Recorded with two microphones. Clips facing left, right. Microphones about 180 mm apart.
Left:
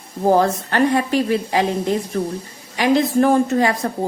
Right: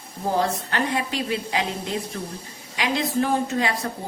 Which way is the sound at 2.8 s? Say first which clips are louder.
Left 8 dB; 45° left (ahead or behind).